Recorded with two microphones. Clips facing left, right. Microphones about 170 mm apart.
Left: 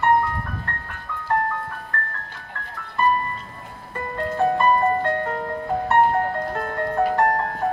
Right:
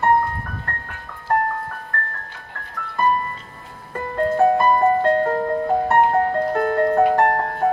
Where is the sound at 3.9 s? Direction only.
50° right (ahead or behind).